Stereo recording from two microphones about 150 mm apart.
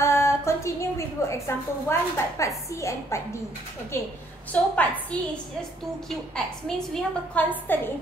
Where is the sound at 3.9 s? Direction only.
15° left (ahead or behind).